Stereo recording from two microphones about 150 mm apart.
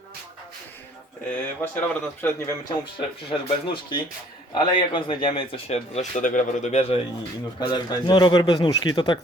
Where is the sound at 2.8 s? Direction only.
35° left (ahead or behind); by 7.0 s 50° left (ahead or behind).